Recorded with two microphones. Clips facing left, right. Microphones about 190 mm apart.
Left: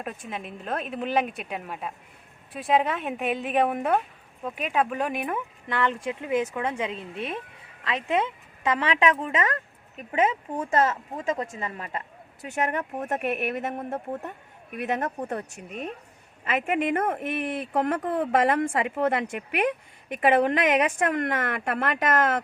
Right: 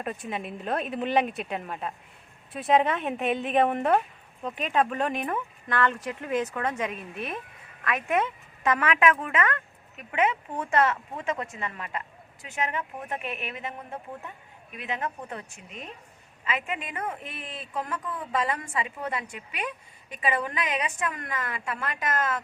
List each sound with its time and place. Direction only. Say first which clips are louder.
0.3 s a woman's voice: right 1 dB; centre (ahead or behind)
6.8 s speech: left 1 dB; 20° left (ahead or behind)
8.8 s a woman's voice: left 1 dB; 30° left (ahead or behind)
10.8 s a woman's voice: even; 40° left (ahead or behind)
15.5 s speech: left 7 dB; 55° left (ahead or behind)